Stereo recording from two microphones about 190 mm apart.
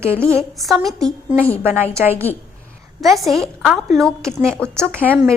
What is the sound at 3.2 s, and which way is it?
A woman's voice, centre (ahead or behind).